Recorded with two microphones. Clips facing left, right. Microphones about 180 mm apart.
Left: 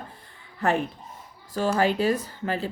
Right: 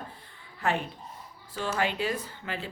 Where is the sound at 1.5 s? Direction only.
40° left (ahead or behind).